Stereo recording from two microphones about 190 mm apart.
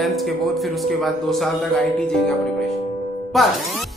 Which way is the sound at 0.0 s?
Centre (ahead or behind).